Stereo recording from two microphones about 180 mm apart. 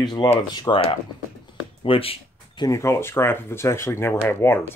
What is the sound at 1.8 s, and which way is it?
Cash register, 30° left (ahead or behind).